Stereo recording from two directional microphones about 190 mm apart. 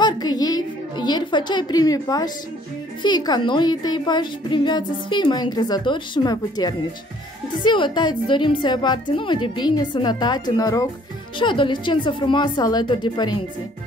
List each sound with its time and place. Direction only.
0.0 s music: 20° left (ahead or behind)
3.0 s a woman's voice: 20° left (ahead or behind)